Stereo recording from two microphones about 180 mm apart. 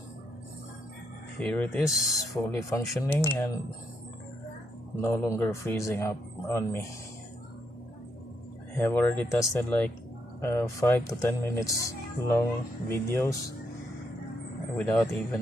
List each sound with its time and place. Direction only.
1.4 s speech: 10° left (ahead or behind)
1.9 s speech: centre (ahead or behind)
2.3 s speech: 15° left (ahead or behind)
5.0 s speech: 15° left (ahead or behind)
8.7 s speech: 10° left (ahead or behind)
14.8 s speech: 15° left (ahead or behind)